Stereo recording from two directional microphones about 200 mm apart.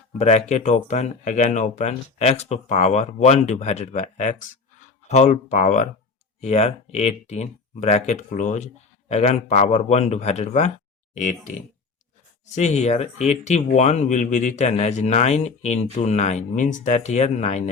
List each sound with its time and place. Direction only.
0.2 s speech: 35° left (ahead or behind)
12.5 s speech: 35° left (ahead or behind)